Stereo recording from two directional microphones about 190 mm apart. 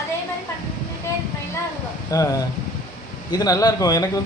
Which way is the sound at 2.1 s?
20° left (ahead or behind).